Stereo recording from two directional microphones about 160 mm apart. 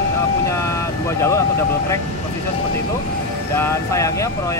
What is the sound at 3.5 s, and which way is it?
Speech, 15° left (ahead or behind).